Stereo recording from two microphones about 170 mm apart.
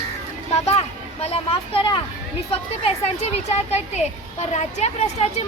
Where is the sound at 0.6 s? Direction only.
40° left (ahead or behind).